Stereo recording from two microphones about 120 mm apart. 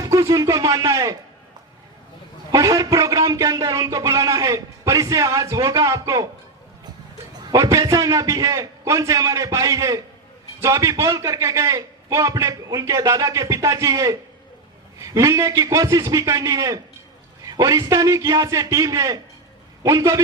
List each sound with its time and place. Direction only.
0.0 s a man's voice: 25° right (ahead or behind)
2.5 s a man's voice: 25° right (ahead or behind)
7.5 s a man's voice: 25° right (ahead or behind)